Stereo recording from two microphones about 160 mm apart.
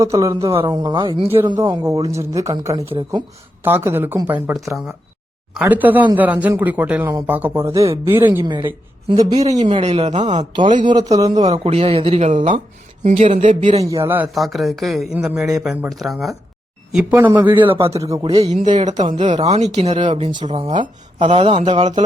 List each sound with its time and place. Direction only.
0.0 s speech: 20° right (ahead or behind)
1.8 s speech: 20° right (ahead or behind)
8.4 s speech: 30° right (ahead or behind); by 10.4 s 45° right (ahead or behind)
10.8 s speech: 25° right (ahead or behind)
11.3 s speech: 45° right (ahead or behind)
13.8 s speech: 15° right (ahead or behind)
14.3 s speech: centre (ahead or behind)
17.7 s speech: 35° right (ahead or behind)
18.5 s speech: 50° right (ahead or behind)
18.9 s speech: 25° right (ahead or behind)
19.5 s speech: 45° right (ahead or behind)
21.2 s speech: 30° right (ahead or behind)
21.6 s speech: 45° right (ahead or behind)